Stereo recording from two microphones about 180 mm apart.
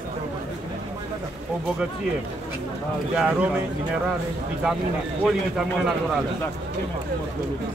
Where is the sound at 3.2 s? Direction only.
5° right (ahead or behind).